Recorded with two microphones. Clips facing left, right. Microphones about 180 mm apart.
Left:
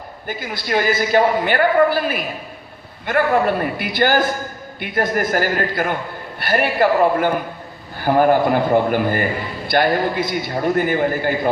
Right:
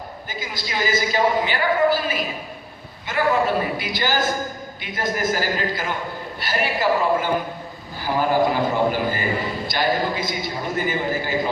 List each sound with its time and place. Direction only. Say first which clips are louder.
0.3 s a man's voice: left 9 dB; 60° left (ahead or behind)